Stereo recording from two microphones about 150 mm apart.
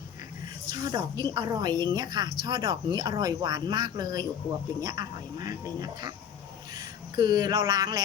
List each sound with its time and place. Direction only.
0.7 s speech: 25° right (ahead or behind)